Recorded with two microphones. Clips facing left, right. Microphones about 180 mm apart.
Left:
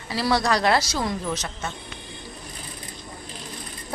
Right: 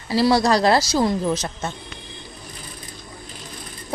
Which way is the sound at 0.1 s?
30° right (ahead or behind).